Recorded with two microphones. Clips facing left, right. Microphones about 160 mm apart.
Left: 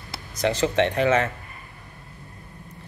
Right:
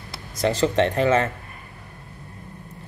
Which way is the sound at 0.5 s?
35° right (ahead or behind).